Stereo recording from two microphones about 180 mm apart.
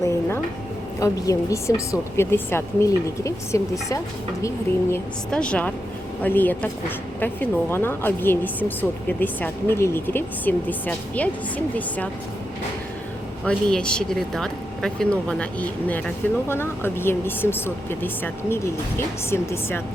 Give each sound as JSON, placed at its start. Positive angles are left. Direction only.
{"t": 0.0, "sound": "a sound", "side_deg": 15}
{"t": 0.9, "sound": "speech", "side_deg": 20}
{"t": 5.3, "sound": "speech", "side_deg": 5}
{"t": 13.4, "sound": "speech", "side_deg": 5}